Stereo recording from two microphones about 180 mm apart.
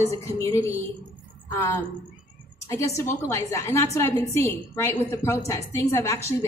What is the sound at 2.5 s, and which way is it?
A woman's voice, 15° left (ahead or behind).